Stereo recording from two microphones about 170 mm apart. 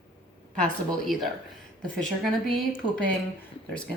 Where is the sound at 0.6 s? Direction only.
Centre (ahead or behind).